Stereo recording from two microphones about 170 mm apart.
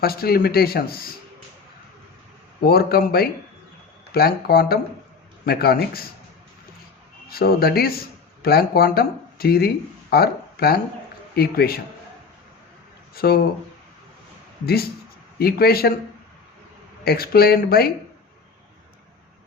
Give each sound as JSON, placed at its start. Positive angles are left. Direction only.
{"t": 0.0, "sound": "speech", "side_deg": 65}
{"t": 2.6, "sound": "speech", "side_deg": 65}
{"t": 7.3, "sound": "a man's voice", "side_deg": 65}
{"t": 13.1, "sound": "speech", "side_deg": 65}
{"t": 15.4, "sound": "speech", "side_deg": 65}
{"t": 17.0, "sound": "speech", "side_deg": 65}